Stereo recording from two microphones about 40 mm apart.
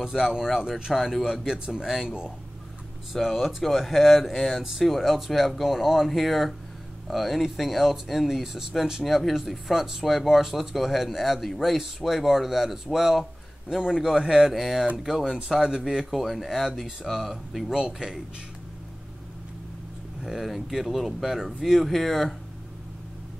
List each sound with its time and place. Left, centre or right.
0.0 s speech: centre
2.0 s speech: right
3.1 s speech: centre
9.0 s speech: centre
16.1 s speech: centre
17.7 s speech: centre
20.2 s speech: centre
21.8 s speech: centre